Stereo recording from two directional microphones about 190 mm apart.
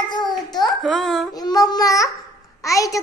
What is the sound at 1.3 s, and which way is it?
A child's voice, 20° left (ahead or behind).